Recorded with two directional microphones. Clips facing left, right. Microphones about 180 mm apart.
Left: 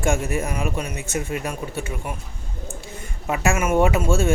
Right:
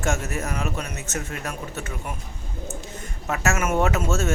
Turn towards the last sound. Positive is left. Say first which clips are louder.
# left 4 dB
turn(degrees=10)  # may be behind; listen again after turning